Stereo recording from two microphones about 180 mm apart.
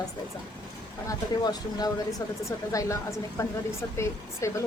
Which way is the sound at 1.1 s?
20° left (ahead or behind).